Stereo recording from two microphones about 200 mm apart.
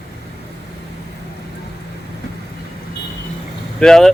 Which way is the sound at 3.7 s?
5° left (ahead or behind).